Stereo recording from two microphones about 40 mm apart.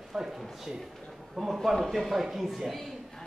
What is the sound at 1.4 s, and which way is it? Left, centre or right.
Speech, centre.